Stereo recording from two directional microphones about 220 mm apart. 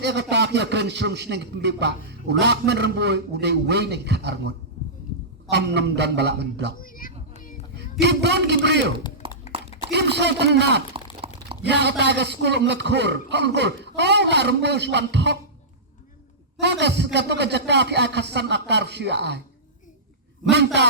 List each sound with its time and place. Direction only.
0.0 s a man's voice: 50° right (ahead or behind)
6.7 s a sound: 40° left (ahead or behind)
7.8 s a man's voice: 50° right (ahead or behind)
9.2 s a sound: 25° right (ahead or behind)
9.9 s a man's voice: 50° right (ahead or behind)
16.6 s a man's voice: 50° right (ahead or behind)